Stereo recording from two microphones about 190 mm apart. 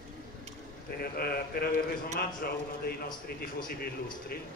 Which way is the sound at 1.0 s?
55° left (ahead or behind).